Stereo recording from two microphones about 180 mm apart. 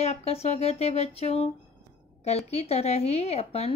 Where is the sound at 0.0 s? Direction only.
35° left (ahead or behind).